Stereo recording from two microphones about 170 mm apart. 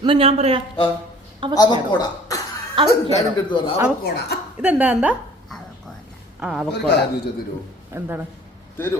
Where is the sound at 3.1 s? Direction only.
30° left (ahead or behind).